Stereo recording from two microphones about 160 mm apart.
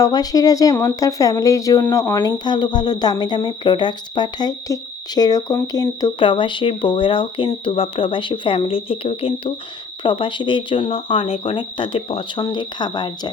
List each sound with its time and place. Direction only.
0.0 s speech: 25° left (ahead or behind)